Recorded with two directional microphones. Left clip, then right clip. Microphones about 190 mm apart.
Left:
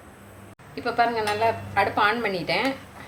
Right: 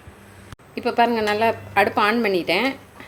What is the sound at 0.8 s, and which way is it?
A woman's voice, 40° right (ahead or behind).